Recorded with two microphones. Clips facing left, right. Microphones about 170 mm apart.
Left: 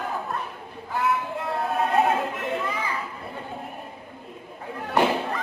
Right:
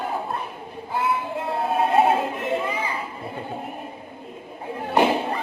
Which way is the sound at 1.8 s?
25° right (ahead or behind).